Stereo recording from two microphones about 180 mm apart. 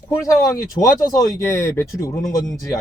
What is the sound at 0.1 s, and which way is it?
Speech, 15° left (ahead or behind).